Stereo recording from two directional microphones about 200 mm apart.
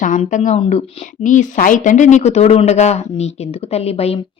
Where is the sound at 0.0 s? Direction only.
40° left (ahead or behind).